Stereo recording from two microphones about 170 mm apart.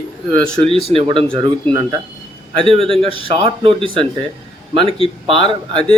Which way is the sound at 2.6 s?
30° right (ahead or behind).